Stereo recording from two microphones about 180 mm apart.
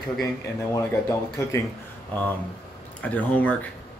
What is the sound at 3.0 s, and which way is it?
Speech, 10° left (ahead or behind).